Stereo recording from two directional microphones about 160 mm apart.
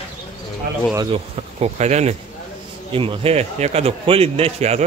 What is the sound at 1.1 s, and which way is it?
Speech, 40° right (ahead or behind).